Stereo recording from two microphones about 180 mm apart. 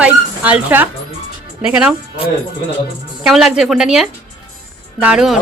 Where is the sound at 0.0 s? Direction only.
5° right (ahead or behind).